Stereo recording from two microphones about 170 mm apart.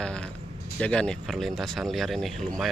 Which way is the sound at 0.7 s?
5° left (ahead or behind).